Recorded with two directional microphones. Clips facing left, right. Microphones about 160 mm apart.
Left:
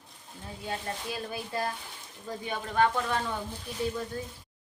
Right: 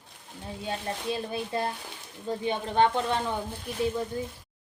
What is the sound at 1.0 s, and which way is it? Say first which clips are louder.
Speech: right 5 dB; 25° right (ahead or behind).